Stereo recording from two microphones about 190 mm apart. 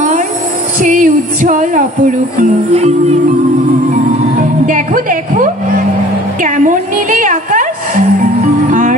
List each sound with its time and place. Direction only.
0.7 s music: 45° right (ahead or behind)
2.7 s speech: 35° right (ahead or behind)
4.4 s speech: 45° right (ahead or behind)
6.4 s a sound: 45° right (ahead or behind)
8.6 s music: 40° right (ahead or behind)